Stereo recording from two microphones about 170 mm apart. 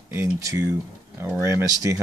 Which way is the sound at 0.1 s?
15° right (ahead or behind).